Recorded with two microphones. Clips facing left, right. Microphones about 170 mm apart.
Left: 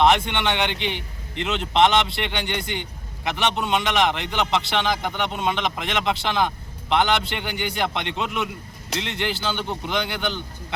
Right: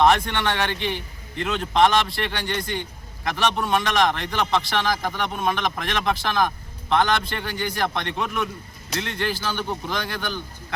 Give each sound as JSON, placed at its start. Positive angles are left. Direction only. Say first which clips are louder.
{"t": 0.0, "sound": "a man's voice", "louder": "even", "side_deg": 20}